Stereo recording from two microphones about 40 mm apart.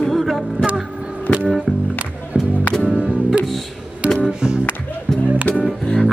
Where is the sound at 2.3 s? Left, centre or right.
Right.